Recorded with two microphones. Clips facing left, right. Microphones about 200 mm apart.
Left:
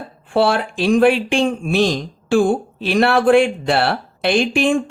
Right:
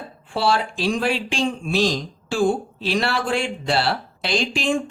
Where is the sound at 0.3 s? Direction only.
55° left (ahead or behind).